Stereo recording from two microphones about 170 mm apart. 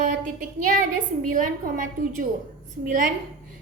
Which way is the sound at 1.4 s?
55° right (ahead or behind).